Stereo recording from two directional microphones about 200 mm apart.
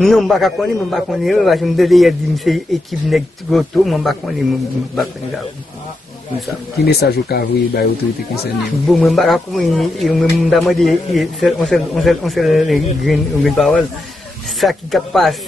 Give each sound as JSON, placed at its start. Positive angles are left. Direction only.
{"t": 0.0, "sound": "speech", "side_deg": 0}
{"t": 6.8, "sound": "speech", "side_deg": 55}
{"t": 8.8, "sound": "speech", "side_deg": 0}